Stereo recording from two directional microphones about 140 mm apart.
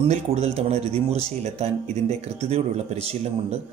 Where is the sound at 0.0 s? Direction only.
45° right (ahead or behind).